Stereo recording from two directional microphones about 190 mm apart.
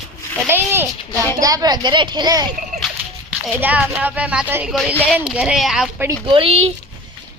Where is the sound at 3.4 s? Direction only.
5° right (ahead or behind).